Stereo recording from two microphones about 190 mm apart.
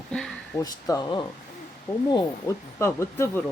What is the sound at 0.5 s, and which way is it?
Speech, 20° left (ahead or behind).